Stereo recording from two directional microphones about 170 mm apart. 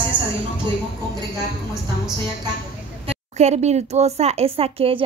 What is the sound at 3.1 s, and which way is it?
A woman's voice, 40° right (ahead or behind).